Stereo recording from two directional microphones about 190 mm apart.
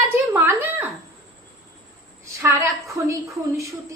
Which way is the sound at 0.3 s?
10° right (ahead or behind).